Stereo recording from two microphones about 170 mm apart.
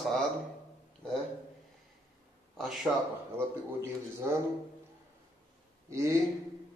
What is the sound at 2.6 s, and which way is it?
Speech, centre (ahead or behind).